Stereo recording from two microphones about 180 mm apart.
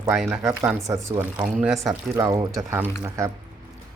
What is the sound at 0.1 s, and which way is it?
Speech, 10° right (ahead or behind).